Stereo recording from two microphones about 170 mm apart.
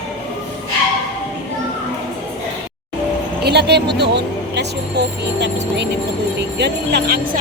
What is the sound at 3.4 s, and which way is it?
Speech, 75° right (ahead or behind).